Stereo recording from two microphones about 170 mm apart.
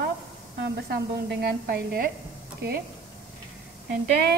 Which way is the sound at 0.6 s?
75° right (ahead or behind).